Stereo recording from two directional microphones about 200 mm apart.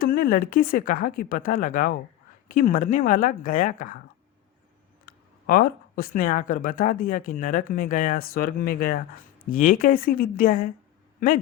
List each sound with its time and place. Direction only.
0.0 s speech: 50° left (ahead or behind)
5.0 s speech: 50° left (ahead or behind)